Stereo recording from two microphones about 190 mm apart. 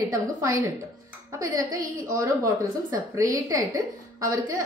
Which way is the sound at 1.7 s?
15° right (ahead or behind).